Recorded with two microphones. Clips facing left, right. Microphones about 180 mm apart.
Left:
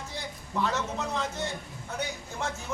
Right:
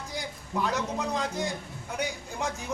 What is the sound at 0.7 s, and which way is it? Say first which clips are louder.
A man's voice: right 2 dB; 15° right (ahead or behind).